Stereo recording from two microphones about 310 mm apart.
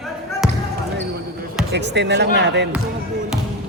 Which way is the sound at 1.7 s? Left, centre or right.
Right.